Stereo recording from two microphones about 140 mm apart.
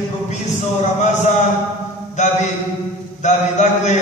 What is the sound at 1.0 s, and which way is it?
A man's voice, 55° left (ahead or behind).